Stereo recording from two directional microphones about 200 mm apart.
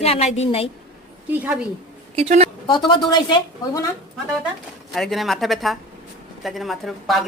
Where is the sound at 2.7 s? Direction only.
20° left (ahead or behind).